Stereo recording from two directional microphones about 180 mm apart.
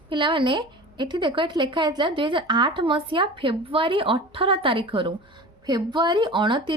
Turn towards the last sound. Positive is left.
turn(degrees=-25)  # may be behind; listen again after turning